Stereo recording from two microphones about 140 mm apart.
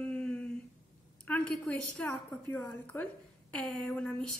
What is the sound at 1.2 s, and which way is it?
A woman's voice, 10° left (ahead or behind).